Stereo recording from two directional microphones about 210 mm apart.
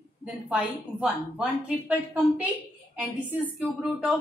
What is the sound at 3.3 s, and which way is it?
Speech, 5° right (ahead or behind).